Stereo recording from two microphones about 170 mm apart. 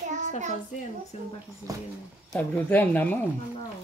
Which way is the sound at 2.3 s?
10° left (ahead or behind).